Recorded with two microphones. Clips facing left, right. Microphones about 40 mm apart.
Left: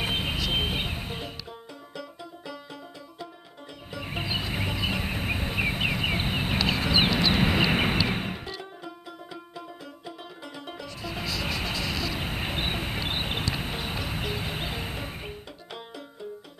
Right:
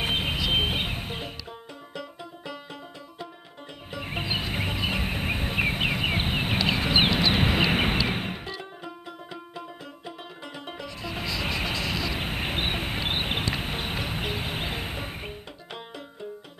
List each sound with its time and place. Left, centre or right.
0.0 s music: centre
6.9 s vehicle: centre
8.1 s music: centre
11.8 s vehicle: centre